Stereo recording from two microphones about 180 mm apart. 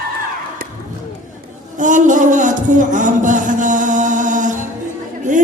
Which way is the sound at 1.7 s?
45° right (ahead or behind).